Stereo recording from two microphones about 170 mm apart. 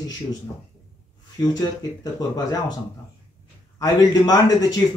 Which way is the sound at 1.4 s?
25° left (ahead or behind).